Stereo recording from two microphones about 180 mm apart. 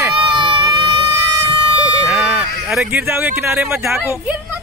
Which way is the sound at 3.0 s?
15° right (ahead or behind).